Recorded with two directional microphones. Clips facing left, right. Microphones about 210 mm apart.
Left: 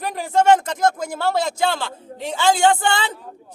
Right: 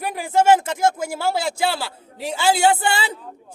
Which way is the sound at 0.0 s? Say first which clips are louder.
Even; 10° right (ahead or behind).